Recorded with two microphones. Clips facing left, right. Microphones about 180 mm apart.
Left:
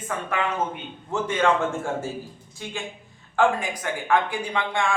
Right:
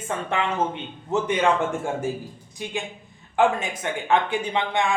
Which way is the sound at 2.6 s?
20° right (ahead or behind).